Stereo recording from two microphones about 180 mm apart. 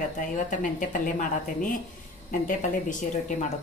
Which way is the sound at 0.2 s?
45° left (ahead or behind).